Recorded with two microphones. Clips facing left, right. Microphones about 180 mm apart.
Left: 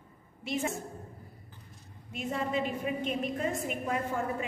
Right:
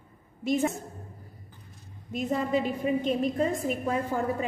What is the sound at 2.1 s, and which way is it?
A woman's voice, 40° right (ahead or behind).